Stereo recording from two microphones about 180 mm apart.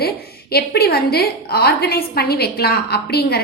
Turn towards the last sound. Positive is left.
turn(degrees=60)  # may be behind; listen again after turning